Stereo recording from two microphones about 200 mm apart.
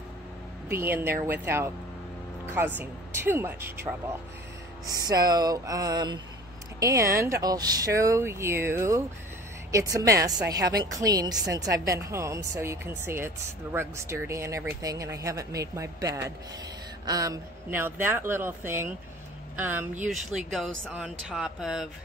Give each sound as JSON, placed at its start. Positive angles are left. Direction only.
{"t": 0.7, "sound": "a woman's voice", "side_deg": -10}